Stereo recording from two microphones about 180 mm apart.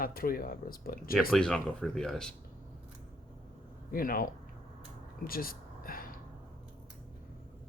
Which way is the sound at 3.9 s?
50° left (ahead or behind).